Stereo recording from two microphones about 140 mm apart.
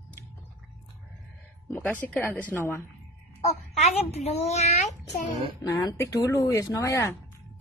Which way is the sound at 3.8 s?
50° left (ahead or behind).